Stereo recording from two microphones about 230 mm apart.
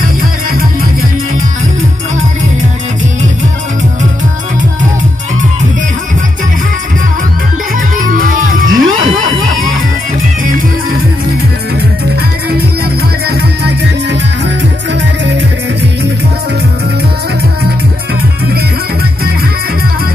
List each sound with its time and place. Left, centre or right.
8.0 s music: right